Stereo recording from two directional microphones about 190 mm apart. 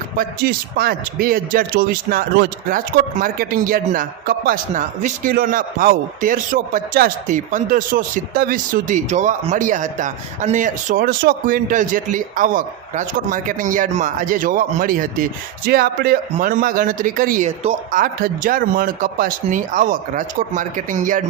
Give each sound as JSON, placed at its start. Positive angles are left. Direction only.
{"t": 0.2, "sound": "speech", "side_deg": -55}
{"t": 17.6, "sound": "speech", "side_deg": -35}
{"t": 18.0, "sound": "speech", "side_deg": -50}